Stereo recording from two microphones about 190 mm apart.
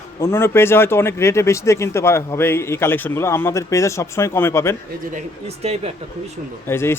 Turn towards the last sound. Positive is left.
turn(degrees=15)  # may be behind; listen again after turning